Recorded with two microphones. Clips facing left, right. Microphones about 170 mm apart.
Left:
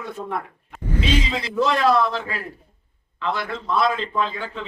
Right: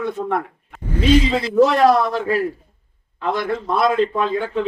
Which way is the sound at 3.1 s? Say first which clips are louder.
Right 5 dB; 45° right (ahead or behind).